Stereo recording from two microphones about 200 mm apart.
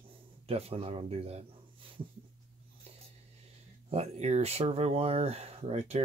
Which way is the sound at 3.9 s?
30° right (ahead or behind).